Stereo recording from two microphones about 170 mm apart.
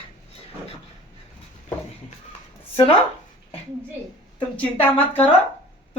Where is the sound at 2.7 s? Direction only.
30° left (ahead or behind).